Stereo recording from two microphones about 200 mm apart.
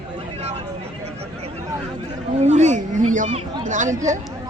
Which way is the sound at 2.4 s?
35° right (ahead or behind).